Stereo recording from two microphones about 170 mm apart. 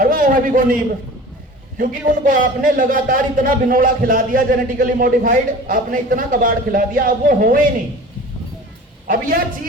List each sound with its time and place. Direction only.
0.0 s a sound: 55° right (ahead or behind)
1.8 s a man's voice: 55° right (ahead or behind)
9.0 s a man's voice: 55° right (ahead or behind)